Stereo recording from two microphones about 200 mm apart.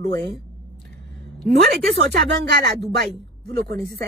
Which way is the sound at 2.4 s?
55° right (ahead or behind).